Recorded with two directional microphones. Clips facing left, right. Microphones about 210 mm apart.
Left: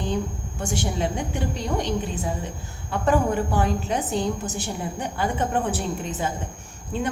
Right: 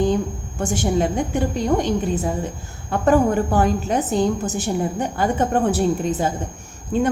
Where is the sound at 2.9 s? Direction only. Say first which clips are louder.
Right 5 dB; 45° right (ahead or behind).